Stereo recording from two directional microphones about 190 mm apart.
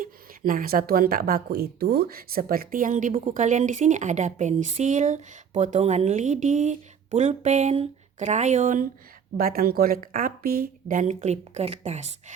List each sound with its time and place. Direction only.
0.0 s speech: 50° right (ahead or behind)